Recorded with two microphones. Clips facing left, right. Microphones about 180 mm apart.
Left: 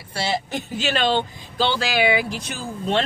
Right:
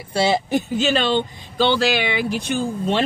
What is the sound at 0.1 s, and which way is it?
Speech, 15° right (ahead or behind).